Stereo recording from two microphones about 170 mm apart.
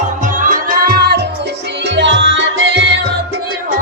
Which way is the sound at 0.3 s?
50° right (ahead or behind).